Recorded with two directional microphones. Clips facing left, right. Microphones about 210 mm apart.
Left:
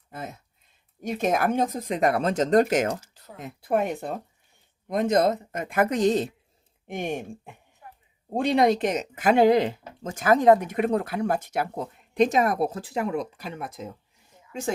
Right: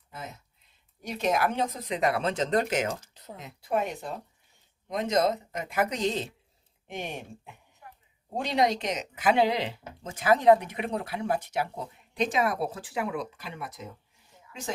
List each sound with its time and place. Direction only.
1.0 s speech: 50° left (ahead or behind)